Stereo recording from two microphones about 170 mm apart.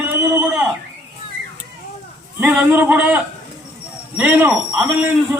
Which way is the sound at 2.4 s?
10° right (ahead or behind).